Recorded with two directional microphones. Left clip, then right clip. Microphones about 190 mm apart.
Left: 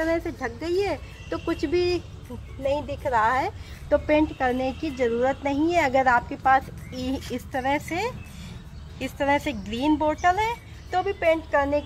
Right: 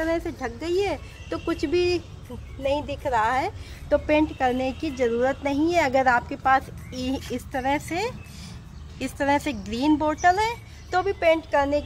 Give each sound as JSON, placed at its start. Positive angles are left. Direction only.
{"t": 0.0, "sound": "a woman's voice", "side_deg": 0}